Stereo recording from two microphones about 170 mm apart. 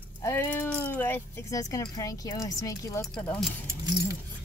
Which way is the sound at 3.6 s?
20° right (ahead or behind).